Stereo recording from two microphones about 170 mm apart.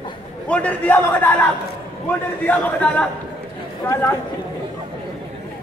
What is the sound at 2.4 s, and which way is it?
A man's voice, 10° left (ahead or behind).